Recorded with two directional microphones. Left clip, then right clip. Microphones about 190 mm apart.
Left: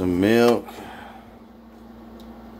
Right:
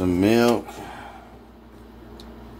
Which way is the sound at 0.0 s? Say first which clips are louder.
Left 1 dB; 10° left (ahead or behind).